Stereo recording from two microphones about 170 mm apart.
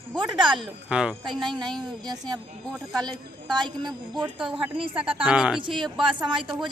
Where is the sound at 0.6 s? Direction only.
5° right (ahead or behind).